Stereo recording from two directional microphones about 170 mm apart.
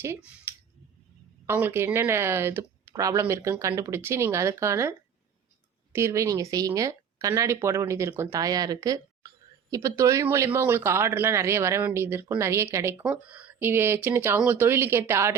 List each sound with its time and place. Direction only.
0.5 s scissors: 10° right (ahead or behind)
1.5 s speech: 10° right (ahead or behind)